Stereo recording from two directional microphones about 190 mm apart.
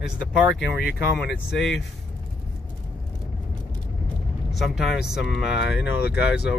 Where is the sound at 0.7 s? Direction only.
55° left (ahead or behind).